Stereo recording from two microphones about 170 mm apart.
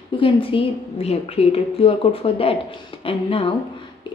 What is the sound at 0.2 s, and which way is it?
Speech, 30° left (ahead or behind).